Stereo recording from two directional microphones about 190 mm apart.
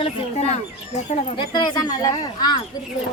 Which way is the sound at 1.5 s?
20° left (ahead or behind).